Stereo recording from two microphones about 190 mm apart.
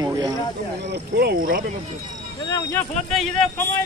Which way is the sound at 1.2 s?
50° right (ahead or behind).